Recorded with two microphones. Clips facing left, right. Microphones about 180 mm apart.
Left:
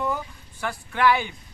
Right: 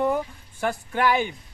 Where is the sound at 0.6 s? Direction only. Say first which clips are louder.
Left 1 dB; 45° right (ahead or behind).